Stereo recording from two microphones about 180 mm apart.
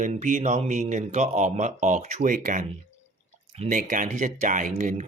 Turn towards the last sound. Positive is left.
turn(degrees=-45)  # may be behind; listen again after turning